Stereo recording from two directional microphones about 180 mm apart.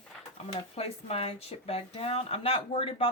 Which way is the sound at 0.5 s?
35° left (ahead or behind).